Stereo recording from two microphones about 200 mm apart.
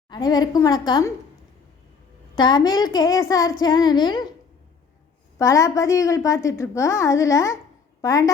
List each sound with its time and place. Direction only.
0.1 s a woman's voice: 20° left (ahead or behind)
2.3 s a woman's voice: 20° left (ahead or behind)
5.4 s a woman's voice: 15° left (ahead or behind)